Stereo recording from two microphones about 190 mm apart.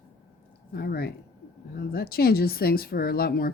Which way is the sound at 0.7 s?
55° left (ahead or behind).